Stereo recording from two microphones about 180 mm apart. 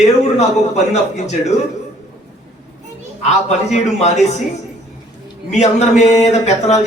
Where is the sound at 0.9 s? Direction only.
40° left (ahead or behind).